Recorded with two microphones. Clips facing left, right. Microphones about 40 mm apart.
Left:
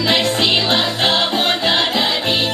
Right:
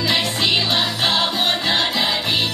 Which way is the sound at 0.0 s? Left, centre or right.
Left.